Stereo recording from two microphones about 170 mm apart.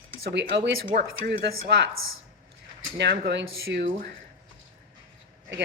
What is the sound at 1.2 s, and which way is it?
Speech, 75° right (ahead or behind).